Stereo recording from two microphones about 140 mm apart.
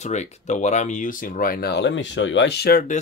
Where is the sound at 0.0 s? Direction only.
55° left (ahead or behind); by 1.6 s 80° left.